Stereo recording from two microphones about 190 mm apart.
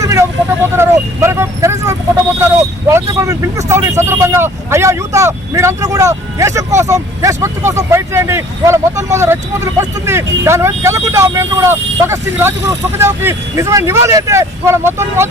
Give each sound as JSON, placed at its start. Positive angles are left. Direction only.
{"t": 0.0, "sound": "vehicle", "side_deg": -15}
{"t": 0.8, "sound": "speech", "side_deg": -15}